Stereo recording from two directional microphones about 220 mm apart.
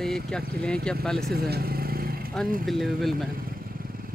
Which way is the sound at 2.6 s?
Centre (ahead or behind).